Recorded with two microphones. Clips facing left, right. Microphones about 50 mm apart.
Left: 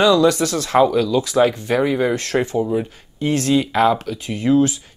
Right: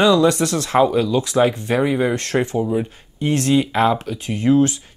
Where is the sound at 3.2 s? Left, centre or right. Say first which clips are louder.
Even; right.